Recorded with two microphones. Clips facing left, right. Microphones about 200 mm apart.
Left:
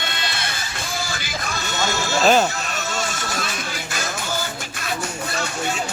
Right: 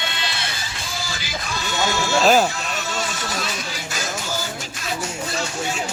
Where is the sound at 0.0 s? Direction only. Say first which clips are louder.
Even; 50° left (ahead or behind).